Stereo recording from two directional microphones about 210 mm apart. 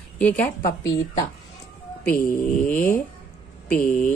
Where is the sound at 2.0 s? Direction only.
45° left (ahead or behind).